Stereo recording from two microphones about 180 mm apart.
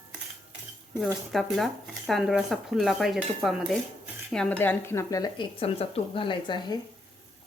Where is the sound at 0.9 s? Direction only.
Centre (ahead or behind); by 6.7 s 25° left (ahead or behind).